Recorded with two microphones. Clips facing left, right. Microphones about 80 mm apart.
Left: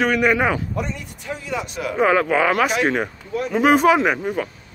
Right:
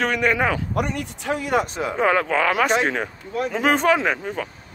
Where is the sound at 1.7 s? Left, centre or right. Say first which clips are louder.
Even; right.